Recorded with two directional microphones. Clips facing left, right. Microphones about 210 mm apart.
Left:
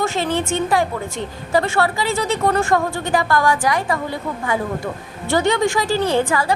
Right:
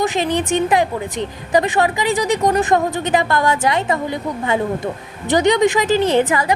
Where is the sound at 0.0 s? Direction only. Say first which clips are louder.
Right 2 dB; 15° right (ahead or behind).